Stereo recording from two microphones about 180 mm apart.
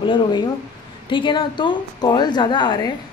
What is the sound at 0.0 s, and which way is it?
Speech, 25° left (ahead or behind).